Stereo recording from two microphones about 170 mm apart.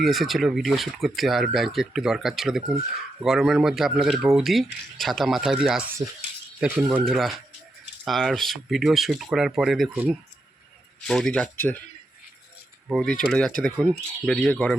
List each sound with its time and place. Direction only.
0.0 s speech: centre (ahead or behind)
6.0 s speech: 25° right (ahead or behind)
6.6 s speech: 10° right (ahead or behind)
11.0 s speech: 5° left (ahead or behind)
12.9 s speech: centre (ahead or behind)